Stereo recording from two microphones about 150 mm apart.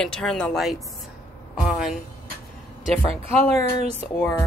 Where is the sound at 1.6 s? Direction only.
5° right (ahead or behind).